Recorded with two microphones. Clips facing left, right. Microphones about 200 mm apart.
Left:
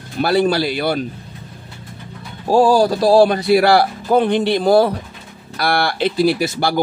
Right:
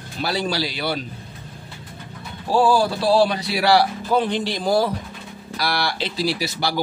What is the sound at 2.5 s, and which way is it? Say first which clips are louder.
Speech: left 5 dB; 40° left (ahead or behind).